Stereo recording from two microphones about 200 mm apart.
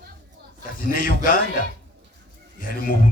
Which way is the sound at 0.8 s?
45° left (ahead or behind).